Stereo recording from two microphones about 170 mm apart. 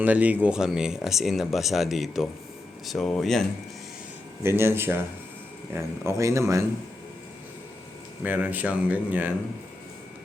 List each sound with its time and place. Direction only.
0.0 s speech: 10° right (ahead or behind)
4.4 s speech: 15° right (ahead or behind)
8.2 s speech: 10° right (ahead or behind)